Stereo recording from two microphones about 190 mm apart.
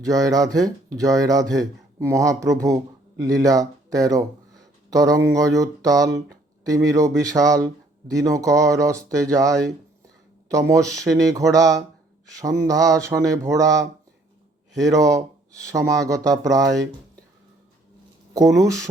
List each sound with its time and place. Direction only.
0.0 s speech: 20° right (ahead or behind)
14.8 s speech: 20° right (ahead or behind)
18.3 s speech: 15° right (ahead or behind)